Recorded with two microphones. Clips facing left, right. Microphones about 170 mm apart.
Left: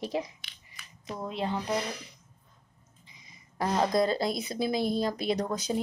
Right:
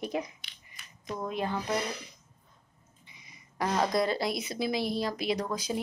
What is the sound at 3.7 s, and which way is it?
Speech, 25° left (ahead or behind).